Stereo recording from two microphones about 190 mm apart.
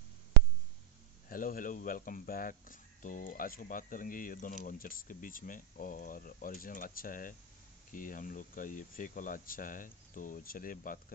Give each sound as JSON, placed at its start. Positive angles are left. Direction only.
{"t": 1.3, "sound": "speech", "side_deg": 45}